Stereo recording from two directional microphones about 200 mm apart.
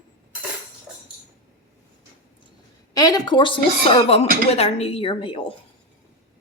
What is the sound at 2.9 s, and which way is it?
A woman's voice, 20° left (ahead or behind).